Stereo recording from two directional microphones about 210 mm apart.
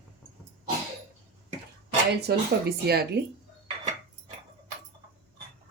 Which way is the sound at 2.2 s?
50° right (ahead or behind).